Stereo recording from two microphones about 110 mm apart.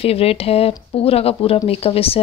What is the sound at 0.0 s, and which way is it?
Speech, 65° left (ahead or behind).